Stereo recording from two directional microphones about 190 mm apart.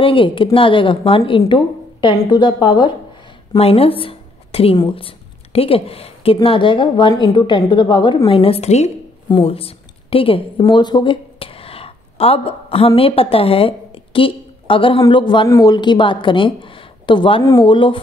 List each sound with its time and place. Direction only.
0.0 s a woman's voice: 25° left (ahead or behind)